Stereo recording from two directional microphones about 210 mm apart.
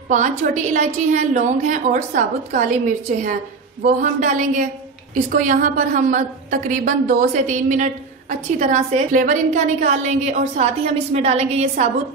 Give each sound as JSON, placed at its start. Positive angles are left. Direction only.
{"t": 0.1, "sound": "a woman's voice", "side_deg": -35}